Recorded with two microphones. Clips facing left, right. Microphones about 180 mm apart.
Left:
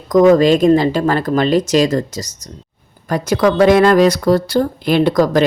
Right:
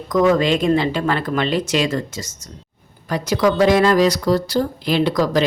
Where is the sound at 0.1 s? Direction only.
45° left (ahead or behind).